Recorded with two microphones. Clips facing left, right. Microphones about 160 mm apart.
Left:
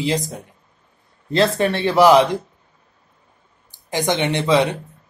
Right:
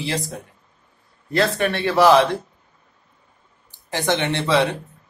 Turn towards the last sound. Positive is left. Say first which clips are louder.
# left 2 dB
turn(degrees=15)  # may be behind; listen again after turning